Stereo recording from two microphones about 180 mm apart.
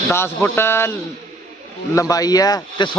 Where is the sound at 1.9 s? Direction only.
20° left (ahead or behind).